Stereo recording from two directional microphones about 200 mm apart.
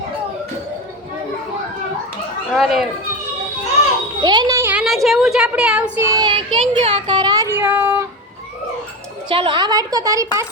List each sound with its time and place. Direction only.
2.5 s speech: centre (ahead or behind)
4.2 s a woman's voice: 20° right (ahead or behind)
9.3 s a woman's voice: 25° right (ahead or behind)